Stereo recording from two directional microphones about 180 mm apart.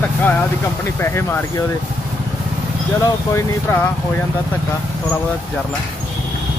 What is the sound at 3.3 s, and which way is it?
Speech, 10° left (ahead or behind).